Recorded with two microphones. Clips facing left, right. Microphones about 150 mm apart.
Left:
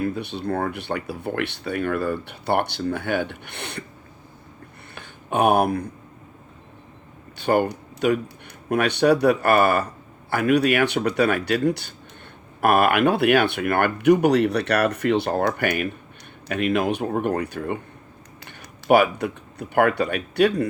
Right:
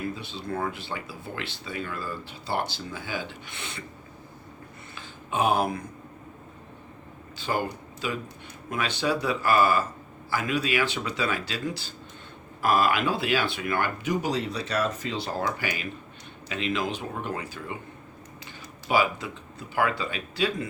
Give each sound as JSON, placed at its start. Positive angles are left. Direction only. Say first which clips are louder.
{"t": 0.0, "sound": "speech", "louder": "left 8 dB", "side_deg": 60}
{"t": 4.9, "sound": "a sound", "louder": "left 5 dB", "side_deg": 60}
{"t": 7.3, "sound": "speech", "louder": "left 8 dB", "side_deg": 60}